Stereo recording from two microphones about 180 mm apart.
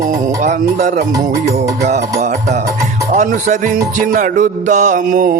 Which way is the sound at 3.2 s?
45° right (ahead or behind).